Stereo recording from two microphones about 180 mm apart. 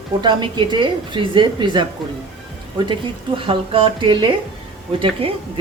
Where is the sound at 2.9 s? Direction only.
30° right (ahead or behind).